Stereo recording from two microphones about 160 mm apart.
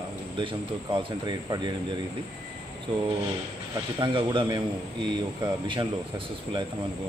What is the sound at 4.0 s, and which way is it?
Speech, 30° right (ahead or behind).